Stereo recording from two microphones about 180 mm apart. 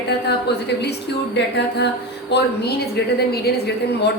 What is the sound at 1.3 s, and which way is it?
A woman's voice, 70° left (ahead or behind).